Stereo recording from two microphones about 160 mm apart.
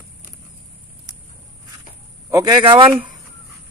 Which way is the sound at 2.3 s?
25° right (ahead or behind).